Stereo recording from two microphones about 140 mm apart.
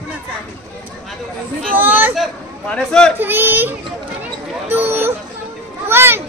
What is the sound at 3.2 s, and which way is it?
Speech, 15° right (ahead or behind).